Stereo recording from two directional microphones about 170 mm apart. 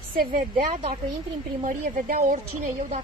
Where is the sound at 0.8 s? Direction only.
35° right (ahead or behind).